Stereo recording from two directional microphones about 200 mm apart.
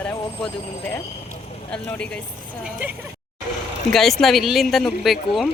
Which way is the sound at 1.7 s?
5° left (ahead or behind).